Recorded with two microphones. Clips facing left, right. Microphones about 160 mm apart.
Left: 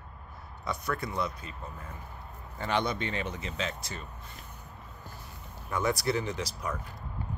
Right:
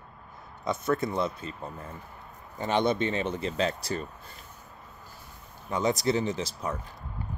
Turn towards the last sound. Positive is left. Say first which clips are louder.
# right 4 dB
turn(degrees=-25)  # may be behind; listen again after turning